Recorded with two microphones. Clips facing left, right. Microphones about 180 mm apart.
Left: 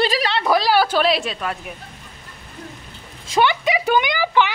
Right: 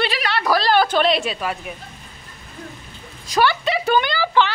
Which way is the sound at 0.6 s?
5° left (ahead or behind).